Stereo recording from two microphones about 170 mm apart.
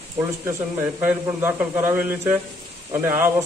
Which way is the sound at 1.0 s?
15° right (ahead or behind).